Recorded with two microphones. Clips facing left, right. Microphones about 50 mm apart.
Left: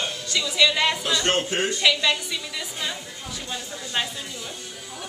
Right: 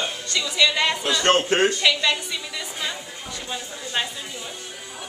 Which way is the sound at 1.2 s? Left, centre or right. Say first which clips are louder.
Right 9 dB; right.